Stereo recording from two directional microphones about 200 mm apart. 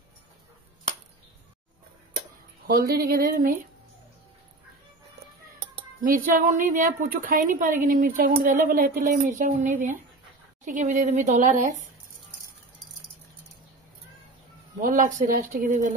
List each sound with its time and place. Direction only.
2.6 s speech: 50° right (ahead or behind)
6.0 s a woman's voice: 45° right (ahead or behind)
14.8 s speech: 40° right (ahead or behind)